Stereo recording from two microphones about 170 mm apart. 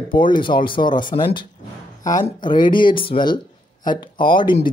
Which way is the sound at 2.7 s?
30° left (ahead or behind).